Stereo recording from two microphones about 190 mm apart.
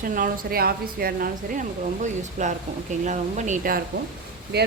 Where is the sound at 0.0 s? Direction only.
45° right (ahead or behind).